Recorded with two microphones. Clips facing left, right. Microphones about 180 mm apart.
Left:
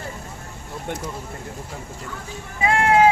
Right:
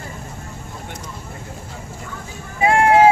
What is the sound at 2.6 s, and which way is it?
Vehicle, 30° right (ahead or behind).